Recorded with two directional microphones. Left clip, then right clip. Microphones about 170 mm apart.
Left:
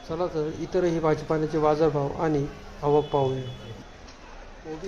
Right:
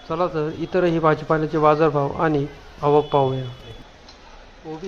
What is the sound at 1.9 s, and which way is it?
Speech, 15° right (ahead or behind).